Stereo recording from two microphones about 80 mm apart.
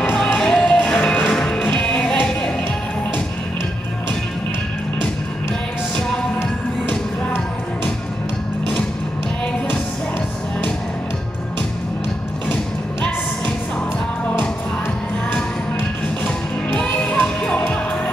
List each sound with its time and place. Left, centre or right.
0.4 s music: centre
6.9 s music: centre
16.7 s music: centre